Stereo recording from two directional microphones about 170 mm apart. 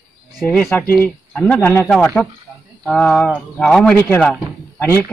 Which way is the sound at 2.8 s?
Centre (ahead or behind).